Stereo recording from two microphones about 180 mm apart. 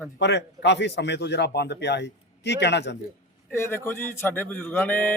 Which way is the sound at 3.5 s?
15° left (ahead or behind).